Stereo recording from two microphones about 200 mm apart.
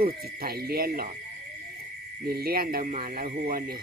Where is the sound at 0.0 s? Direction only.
50° right (ahead or behind).